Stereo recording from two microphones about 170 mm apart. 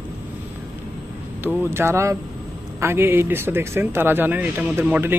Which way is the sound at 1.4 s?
15° right (ahead or behind).